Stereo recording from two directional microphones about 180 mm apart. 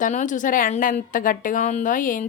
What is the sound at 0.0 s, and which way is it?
A woman's voice, 45° left (ahead or behind).